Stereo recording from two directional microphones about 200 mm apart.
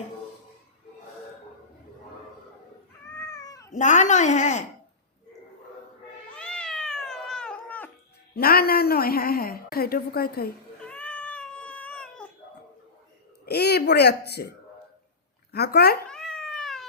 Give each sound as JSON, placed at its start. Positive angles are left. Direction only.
{"t": 3.1, "sound": "cat", "side_deg": 15}
{"t": 3.8, "sound": "a woman's voice", "side_deg": 40}
{"t": 6.3, "sound": "cat", "side_deg": 5}
{"t": 8.4, "sound": "a woman's voice", "side_deg": 50}
{"t": 10.8, "sound": "baby cry", "side_deg": 5}
{"t": 13.4, "sound": "a sound", "side_deg": 55}
{"t": 15.5, "sound": "a woman's voice", "side_deg": 55}
{"t": 16.0, "sound": "cat", "side_deg": 5}